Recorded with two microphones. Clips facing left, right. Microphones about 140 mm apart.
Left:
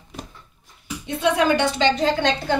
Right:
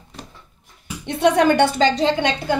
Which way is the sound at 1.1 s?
65° right (ahead or behind).